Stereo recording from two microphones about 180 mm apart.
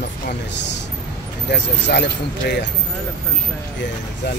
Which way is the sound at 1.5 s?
70° left (ahead or behind).